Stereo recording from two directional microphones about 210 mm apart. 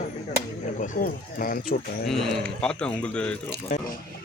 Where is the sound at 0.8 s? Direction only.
45° left (ahead or behind).